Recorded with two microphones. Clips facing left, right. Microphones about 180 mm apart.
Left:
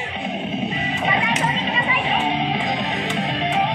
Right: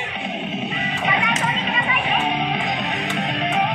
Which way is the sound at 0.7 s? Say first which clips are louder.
Left 1 dB; 30° left (ahead or behind).